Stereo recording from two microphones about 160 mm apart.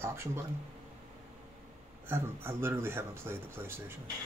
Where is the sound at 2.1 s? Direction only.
15° right (ahead or behind).